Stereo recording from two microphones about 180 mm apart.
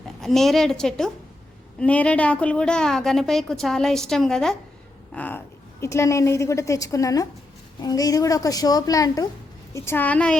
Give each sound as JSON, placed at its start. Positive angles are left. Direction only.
{"t": 0.2, "sound": "a woman's voice", "side_deg": 0}